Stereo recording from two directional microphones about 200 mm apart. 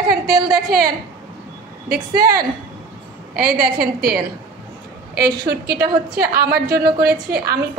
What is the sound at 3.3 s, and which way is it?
Speech, 50° right (ahead or behind).